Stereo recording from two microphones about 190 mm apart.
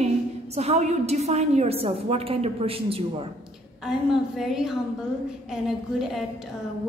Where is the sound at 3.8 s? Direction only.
Centre (ahead or behind).